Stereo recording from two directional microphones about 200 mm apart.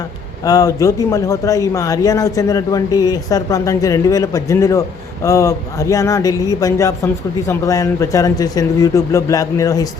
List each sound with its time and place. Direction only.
0.4 s a man's voice: 20° left (ahead or behind)